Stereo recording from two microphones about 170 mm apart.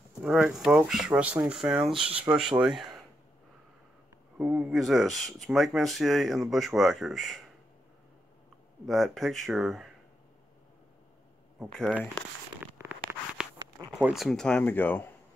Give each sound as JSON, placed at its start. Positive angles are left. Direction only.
{"t": 0.2, "sound": "speech", "side_deg": -5}
{"t": 2.0, "sound": "speech", "side_deg": -35}
{"t": 2.5, "sound": "speech", "side_deg": -5}
{"t": 4.4, "sound": "speech", "side_deg": -5}
{"t": 8.8, "sound": "speech", "side_deg": 0}
{"t": 11.6, "sound": "speech", "side_deg": -5}
{"t": 12.6, "sound": "a sound", "side_deg": -10}
{"t": 13.9, "sound": "speech", "side_deg": 0}